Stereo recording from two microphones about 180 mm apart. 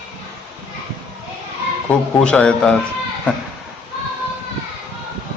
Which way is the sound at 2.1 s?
5° left (ahead or behind).